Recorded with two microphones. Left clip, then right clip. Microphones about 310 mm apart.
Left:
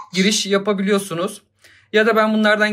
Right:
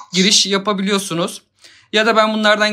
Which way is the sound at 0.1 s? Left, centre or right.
Centre.